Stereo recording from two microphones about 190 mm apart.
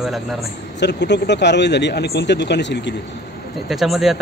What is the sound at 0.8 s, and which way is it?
Speech, 65° left (ahead or behind).